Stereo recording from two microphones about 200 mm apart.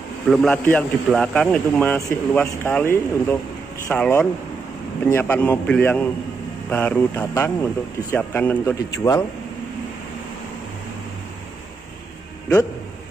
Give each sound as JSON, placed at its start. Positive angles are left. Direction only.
{"t": 0.3, "sound": "a man's voice", "side_deg": 5}